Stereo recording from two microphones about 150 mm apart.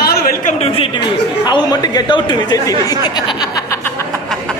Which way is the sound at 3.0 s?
30° left (ahead or behind).